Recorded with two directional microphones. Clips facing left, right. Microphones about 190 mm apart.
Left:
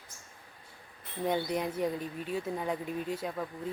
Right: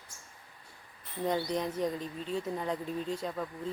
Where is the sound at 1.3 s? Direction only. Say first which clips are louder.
Even; 5° left (ahead or behind).